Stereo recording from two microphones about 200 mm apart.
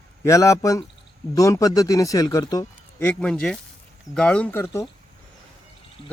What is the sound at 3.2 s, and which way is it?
Speech, 5° left (ahead or behind).